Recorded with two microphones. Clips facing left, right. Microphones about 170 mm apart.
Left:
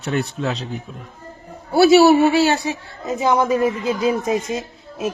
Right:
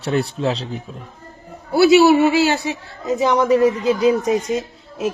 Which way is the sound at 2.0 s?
30° left (ahead or behind).